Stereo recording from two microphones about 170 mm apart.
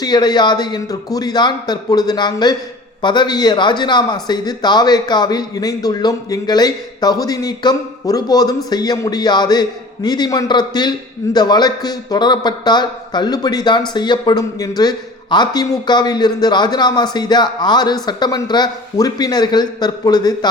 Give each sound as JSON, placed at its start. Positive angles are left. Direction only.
{"t": 0.0, "sound": "a man's voice", "side_deg": 25}